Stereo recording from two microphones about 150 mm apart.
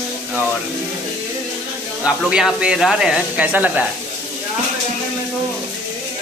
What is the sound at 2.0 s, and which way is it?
Speech, 5° right (ahead or behind).